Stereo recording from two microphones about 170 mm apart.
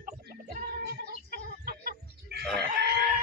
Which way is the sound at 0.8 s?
70° right (ahead or behind).